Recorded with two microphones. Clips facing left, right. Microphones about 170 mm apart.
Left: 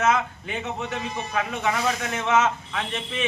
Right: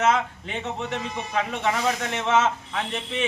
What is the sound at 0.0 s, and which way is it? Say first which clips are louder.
A man's voice: even; 30° right (ahead or behind).